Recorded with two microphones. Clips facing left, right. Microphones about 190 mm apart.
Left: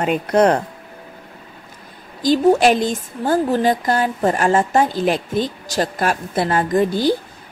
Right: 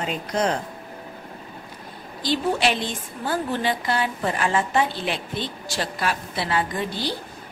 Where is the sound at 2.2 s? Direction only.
45° left (ahead or behind).